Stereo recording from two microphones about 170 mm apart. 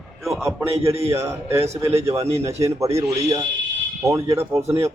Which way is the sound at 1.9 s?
35° right (ahead or behind).